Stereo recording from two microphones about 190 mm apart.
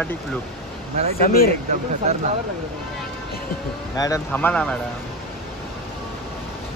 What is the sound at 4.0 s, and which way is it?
Speech, 15° left (ahead or behind).